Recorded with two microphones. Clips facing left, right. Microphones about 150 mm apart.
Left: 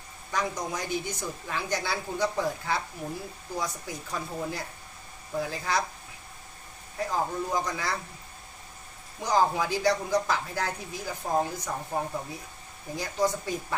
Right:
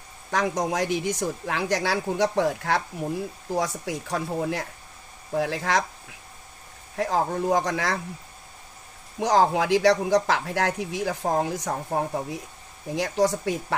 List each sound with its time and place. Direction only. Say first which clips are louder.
0.3 s speech: right 6 dB; 90° right
3.5 s speech: right 7 dB; 90° right
7.0 s speech: right 5 dB; 75° right (ahead or behind)
9.2 s speech: right 4 dB; 80° right; by 12.4 s 65° right (ahead or behind)
12.9 s speech: right 5 dB; 80° right